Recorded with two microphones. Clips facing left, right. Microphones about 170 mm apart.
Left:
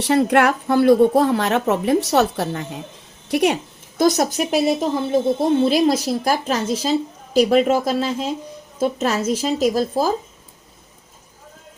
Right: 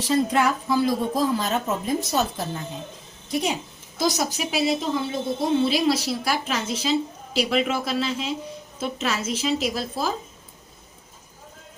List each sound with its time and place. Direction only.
0.0 s a woman's voice: 65° left (ahead or behind); by 10.1 s 40° left (ahead or behind)